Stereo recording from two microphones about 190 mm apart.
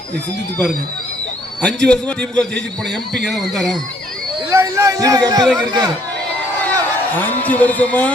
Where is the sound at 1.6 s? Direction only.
5° left (ahead or behind).